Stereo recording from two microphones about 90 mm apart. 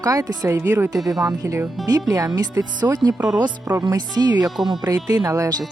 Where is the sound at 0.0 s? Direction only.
40° right (ahead or behind).